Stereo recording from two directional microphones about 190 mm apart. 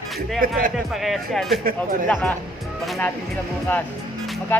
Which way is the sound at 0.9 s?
Centre (ahead or behind).